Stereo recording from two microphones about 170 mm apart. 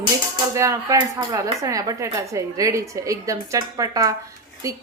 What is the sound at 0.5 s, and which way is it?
Speech, 20° right (ahead or behind).